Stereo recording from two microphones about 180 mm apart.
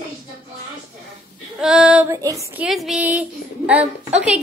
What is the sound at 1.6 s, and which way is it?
Child singing, 5° right (ahead or behind).